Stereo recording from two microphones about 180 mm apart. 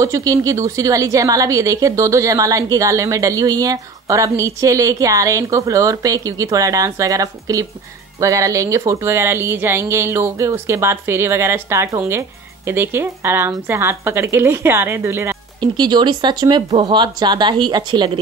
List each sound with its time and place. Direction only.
0.0 s a woman's voice: 20° right (ahead or behind)
15.6 s a woman's voice: 25° right (ahead or behind)